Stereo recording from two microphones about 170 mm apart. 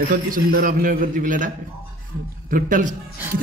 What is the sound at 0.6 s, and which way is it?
Speech, 50° right (ahead or behind).